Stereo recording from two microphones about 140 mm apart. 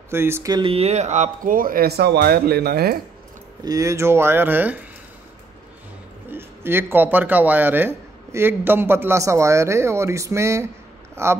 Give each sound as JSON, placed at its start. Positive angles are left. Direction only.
{"t": 0.1, "sound": "speech", "side_deg": -20}
{"t": 0.5, "sound": "speech", "side_deg": -40}
{"t": 3.6, "sound": "speech", "side_deg": -25}
{"t": 6.3, "sound": "speech", "side_deg": -15}